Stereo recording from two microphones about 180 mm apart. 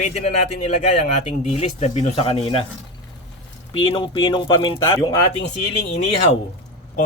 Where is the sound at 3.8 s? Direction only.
25° left (ahead or behind).